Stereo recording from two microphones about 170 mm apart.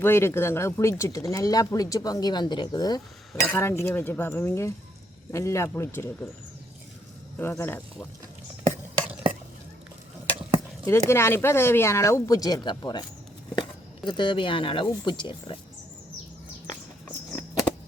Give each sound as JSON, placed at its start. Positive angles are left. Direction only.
{"t": 0.0, "sound": "speech", "side_deg": 15}
{"t": 3.4, "sound": "speech", "side_deg": 10}
{"t": 7.3, "sound": "speech", "side_deg": 15}
{"t": 10.8, "sound": "speech", "side_deg": 15}